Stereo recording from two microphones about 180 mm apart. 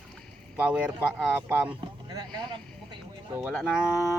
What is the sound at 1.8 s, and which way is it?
Vehicle, 20° right (ahead or behind).